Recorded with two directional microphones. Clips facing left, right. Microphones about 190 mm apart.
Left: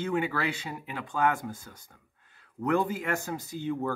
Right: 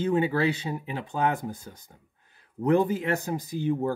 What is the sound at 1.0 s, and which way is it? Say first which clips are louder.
Speech: even; 20° right (ahead or behind).